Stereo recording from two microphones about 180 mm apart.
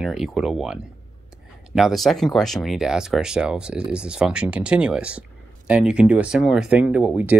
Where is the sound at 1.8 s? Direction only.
Centre (ahead or behind).